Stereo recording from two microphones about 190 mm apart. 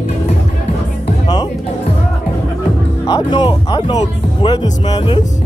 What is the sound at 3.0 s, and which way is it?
Speech, 25° left (ahead or behind).